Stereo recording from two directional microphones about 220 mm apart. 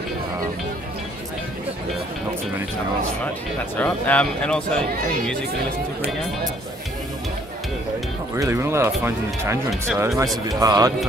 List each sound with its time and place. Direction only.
3.7 s speech: 5° left (ahead or behind)
8.4 s speech: 10° right (ahead or behind)